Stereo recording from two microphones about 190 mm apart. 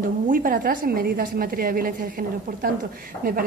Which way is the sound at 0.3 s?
50° right (ahead or behind).